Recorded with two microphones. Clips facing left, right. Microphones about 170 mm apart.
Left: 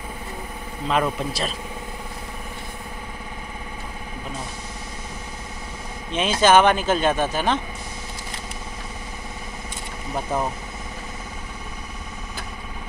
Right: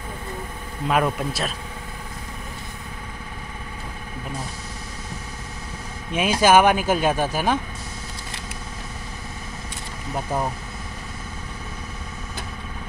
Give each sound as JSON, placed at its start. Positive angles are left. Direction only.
{"t": 0.8, "sound": "speech", "side_deg": -10}
{"t": 6.1, "sound": "speech", "side_deg": -10}